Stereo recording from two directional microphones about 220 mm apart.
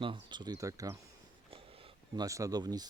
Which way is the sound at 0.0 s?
20° right (ahead or behind).